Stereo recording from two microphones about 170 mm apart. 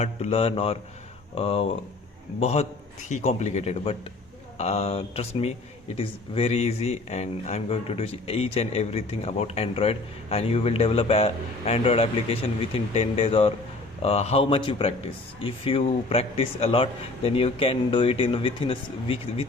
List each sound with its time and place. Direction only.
0.0 s speech: 35° left (ahead or behind)